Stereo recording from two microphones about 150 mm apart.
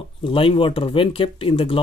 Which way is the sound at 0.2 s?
35° left (ahead or behind).